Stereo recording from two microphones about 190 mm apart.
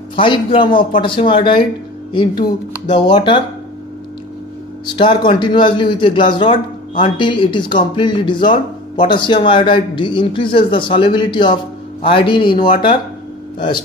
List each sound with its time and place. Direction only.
0.1 s speech: 25° left (ahead or behind)
2.9 s speech: 25° left (ahead or behind)
4.8 s speech: 25° left (ahead or behind)
13.6 s speech: 25° left (ahead or behind)